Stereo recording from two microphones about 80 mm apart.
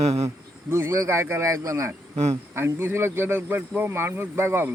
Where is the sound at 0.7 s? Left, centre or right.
Right.